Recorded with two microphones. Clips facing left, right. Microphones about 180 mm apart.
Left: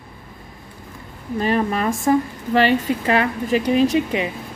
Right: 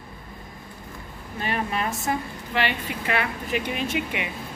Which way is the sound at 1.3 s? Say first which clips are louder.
Left 8 dB; 35° left (ahead or behind).